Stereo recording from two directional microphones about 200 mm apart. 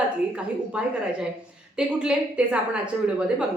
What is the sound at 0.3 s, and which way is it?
A woman's voice, 5° right (ahead or behind).